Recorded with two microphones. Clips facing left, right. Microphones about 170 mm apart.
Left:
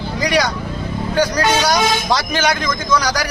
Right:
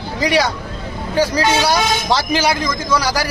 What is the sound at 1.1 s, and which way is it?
Speech, 5° right (ahead or behind).